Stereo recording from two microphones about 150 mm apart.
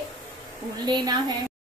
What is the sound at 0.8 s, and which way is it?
Speech, 25° right (ahead or behind).